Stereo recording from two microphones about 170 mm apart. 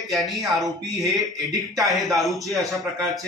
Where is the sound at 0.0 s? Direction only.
Centre (ahead or behind).